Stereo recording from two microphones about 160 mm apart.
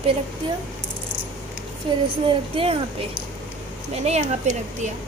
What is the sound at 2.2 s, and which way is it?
Speech, 35° right (ahead or behind).